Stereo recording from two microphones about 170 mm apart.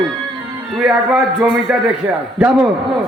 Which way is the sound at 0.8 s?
5° right (ahead or behind).